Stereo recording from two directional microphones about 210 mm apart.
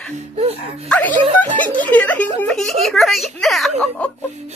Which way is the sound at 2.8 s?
Centre (ahead or behind).